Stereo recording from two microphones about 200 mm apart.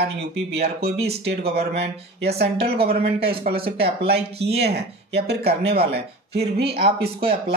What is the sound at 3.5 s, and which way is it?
Speech, 45° right (ahead or behind).